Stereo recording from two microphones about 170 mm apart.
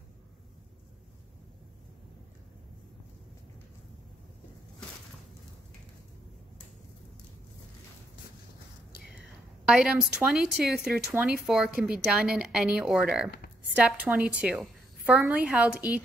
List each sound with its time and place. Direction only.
9.7 s a woman's voice: 5° right (ahead or behind)